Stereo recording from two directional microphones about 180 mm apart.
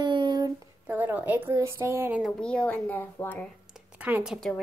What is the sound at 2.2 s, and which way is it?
A woman's voice, 5° left (ahead or behind).